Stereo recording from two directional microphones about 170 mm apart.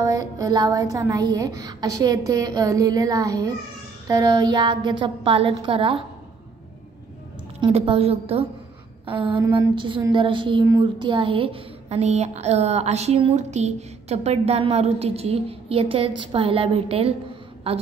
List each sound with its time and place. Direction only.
0.0 s speech: 20° right (ahead or behind)
7.6 s a woman's voice: 30° right (ahead or behind)
9.0 s a sound: 30° right (ahead or behind)
9.4 s a woman's voice: 25° right (ahead or behind)